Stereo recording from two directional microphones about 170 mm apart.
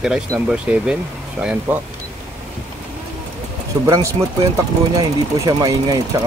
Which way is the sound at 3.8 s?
15° right (ahead or behind).